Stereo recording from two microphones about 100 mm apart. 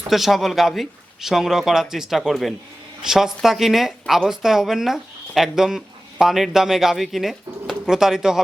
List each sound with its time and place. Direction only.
0.1 s speech: centre (ahead or behind)